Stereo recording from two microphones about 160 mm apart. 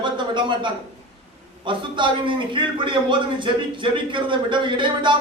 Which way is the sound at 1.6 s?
30° right (ahead or behind).